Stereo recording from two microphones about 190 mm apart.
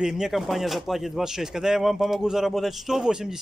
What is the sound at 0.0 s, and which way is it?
A man's voice, centre (ahead or behind).